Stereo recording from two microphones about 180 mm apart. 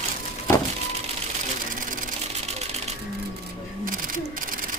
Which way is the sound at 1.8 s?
50° right (ahead or behind).